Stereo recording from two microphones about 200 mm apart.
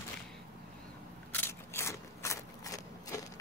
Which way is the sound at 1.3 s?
10° left (ahead or behind).